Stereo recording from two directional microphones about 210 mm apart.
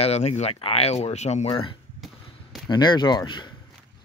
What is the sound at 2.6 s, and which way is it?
Speech, 20° left (ahead or behind).